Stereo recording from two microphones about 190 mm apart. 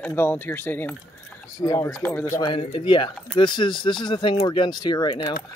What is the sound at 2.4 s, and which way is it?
Speech, 30° left (ahead or behind).